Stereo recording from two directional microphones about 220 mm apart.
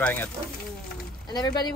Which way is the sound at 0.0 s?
10° left (ahead or behind).